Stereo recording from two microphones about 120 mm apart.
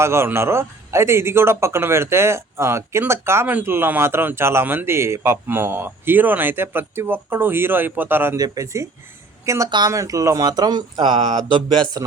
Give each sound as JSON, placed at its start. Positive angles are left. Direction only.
{"t": 0.0, "sound": "speech", "side_deg": -20}
{"t": 8.4, "sound": "speech", "side_deg": -30}
{"t": 9.6, "sound": "speech", "side_deg": -40}
{"t": 9.9, "sound": "speech", "side_deg": -25}